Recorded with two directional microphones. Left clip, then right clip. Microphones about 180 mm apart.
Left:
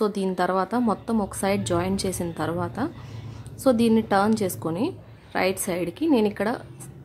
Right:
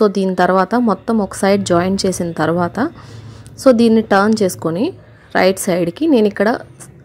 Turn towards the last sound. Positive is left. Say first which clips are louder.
# right 10 dB
turn(degrees=-30)  # may be behind; listen again after turning